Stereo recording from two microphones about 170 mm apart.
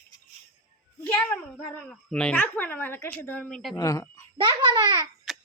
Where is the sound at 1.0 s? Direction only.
10° left (ahead or behind).